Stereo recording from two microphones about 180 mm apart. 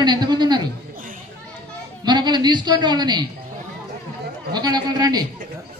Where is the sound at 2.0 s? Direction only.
25° right (ahead or behind).